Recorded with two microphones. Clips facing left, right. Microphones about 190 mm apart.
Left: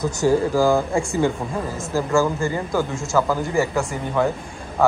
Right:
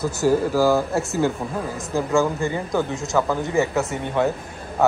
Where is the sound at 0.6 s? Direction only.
5° right (ahead or behind).